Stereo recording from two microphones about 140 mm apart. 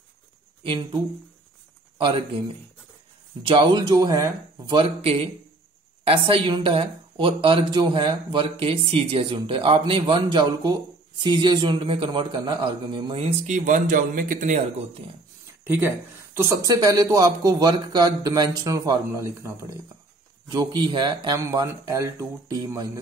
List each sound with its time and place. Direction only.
2.0 s speech: 40° right (ahead or behind)
4.8 s a man's voice: 45° right (ahead or behind)
13.1 s speech: 45° right (ahead or behind); by 14.6 s 70° right (ahead or behind)
16.3 s speech: 25° right (ahead or behind)
20.4 s speech: 30° right (ahead or behind)